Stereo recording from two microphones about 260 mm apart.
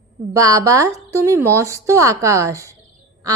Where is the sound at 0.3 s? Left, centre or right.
Centre.